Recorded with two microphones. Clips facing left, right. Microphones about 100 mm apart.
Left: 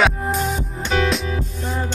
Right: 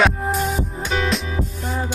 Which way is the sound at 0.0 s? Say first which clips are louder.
Even; centre (ahead or behind).